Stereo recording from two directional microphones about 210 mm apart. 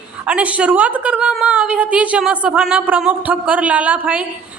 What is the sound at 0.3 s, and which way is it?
A woman's voice, 5° right (ahead or behind).